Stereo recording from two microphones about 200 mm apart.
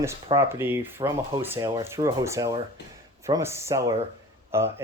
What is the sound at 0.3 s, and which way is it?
Speech, 10° right (ahead or behind).